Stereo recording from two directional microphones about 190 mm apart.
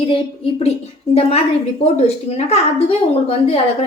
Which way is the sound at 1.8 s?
35° left (ahead or behind).